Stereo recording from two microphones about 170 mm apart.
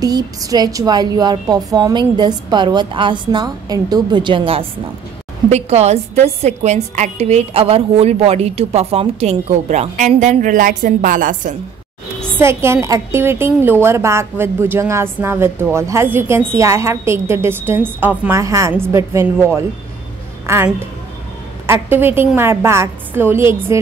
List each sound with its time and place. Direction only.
0.0 s a woman's voice: 20° right (ahead or behind); by 11.5 s 50° right (ahead or behind)
12.4 s a woman's voice: 15° right (ahead or behind)